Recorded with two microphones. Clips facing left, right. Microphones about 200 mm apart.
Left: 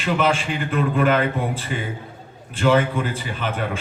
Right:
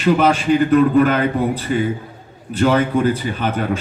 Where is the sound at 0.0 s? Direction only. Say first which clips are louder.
Right 6 dB; 40° right (ahead or behind).